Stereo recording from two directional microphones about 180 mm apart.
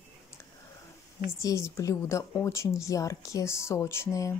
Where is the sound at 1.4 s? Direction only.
15° left (ahead or behind).